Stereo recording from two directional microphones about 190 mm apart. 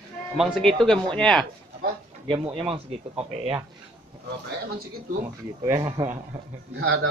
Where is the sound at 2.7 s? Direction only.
30° right (ahead or behind).